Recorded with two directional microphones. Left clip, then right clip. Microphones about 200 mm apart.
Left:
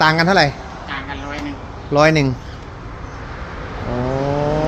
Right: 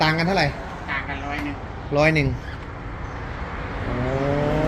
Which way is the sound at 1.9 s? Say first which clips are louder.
Left 6 dB; 40° left (ahead or behind).